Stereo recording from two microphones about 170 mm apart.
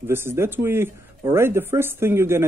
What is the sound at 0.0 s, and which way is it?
Speech, 15° right (ahead or behind).